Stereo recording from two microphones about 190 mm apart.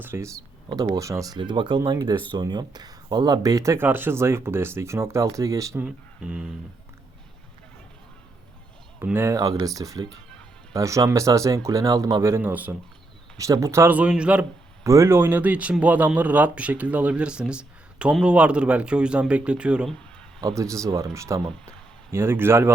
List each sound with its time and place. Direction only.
0.0 s speech: 15° right (ahead or behind)
5.8 s speech: 5° right (ahead or behind)
9.0 s speech: 10° right (ahead or behind)
20.6 s speech: 15° right (ahead or behind)